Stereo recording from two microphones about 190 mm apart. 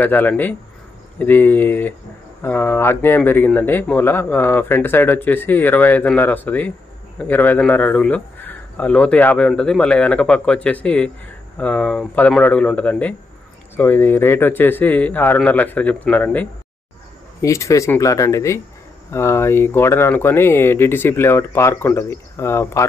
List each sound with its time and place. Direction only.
0.0 s speech: 10° left (ahead or behind)